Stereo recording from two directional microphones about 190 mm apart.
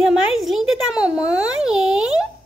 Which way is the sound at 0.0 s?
Centre (ahead or behind).